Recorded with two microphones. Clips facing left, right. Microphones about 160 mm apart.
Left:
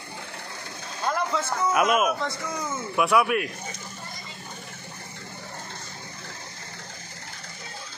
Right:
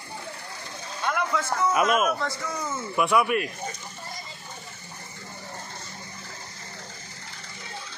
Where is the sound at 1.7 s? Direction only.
5° left (ahead or behind).